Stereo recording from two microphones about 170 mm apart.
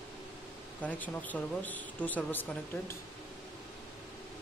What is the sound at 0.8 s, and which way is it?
Speech, 10° left (ahead or behind).